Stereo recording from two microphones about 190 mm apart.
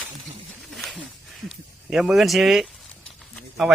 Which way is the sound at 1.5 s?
Centre (ahead or behind).